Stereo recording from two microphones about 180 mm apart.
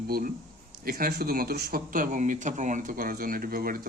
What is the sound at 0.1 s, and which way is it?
Speech, 50° right (ahead or behind).